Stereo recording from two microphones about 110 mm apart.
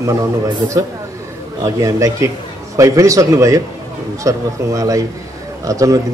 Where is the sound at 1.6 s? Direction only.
30° right (ahead or behind).